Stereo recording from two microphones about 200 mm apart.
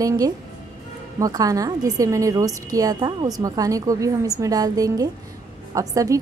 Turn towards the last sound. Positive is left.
turn(degrees=-15)  # may be behind; listen again after turning